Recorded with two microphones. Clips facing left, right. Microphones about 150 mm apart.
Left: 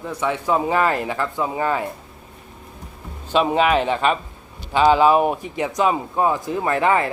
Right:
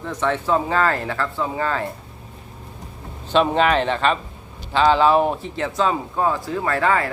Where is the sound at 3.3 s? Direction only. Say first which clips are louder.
Even; 10° left (ahead or behind).